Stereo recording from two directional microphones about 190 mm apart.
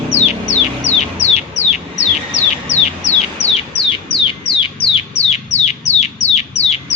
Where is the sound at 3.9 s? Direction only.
25° left (ahead or behind).